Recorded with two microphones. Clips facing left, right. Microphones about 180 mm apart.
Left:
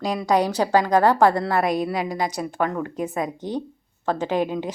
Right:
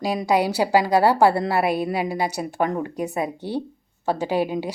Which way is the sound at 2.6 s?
20° right (ahead or behind).